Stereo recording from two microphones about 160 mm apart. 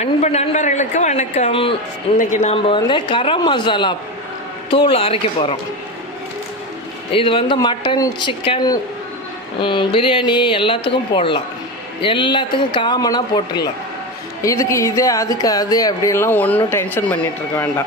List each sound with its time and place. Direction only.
0.0 s a man's voice: 40° left (ahead or behind)
2.6 s speech: 30° left (ahead or behind)
7.1 s speech: 35° left (ahead or behind); by 17.2 s 15° left (ahead or behind)